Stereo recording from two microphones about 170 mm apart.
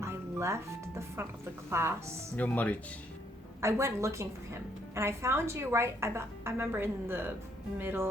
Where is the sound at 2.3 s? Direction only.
10° left (ahead or behind).